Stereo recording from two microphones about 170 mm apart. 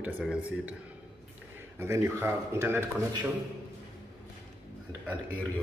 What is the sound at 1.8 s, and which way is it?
Speech, 20° right (ahead or behind).